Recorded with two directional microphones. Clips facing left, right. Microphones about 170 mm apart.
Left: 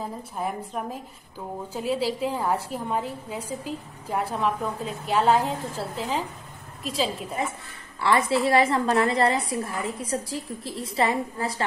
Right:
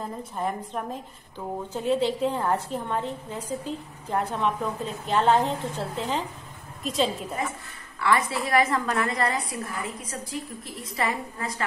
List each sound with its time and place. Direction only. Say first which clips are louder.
0.0 s a woman's voice: even; 5° left (ahead or behind)
8.0 s a woman's voice: left 3 dB; 30° left (ahead or behind)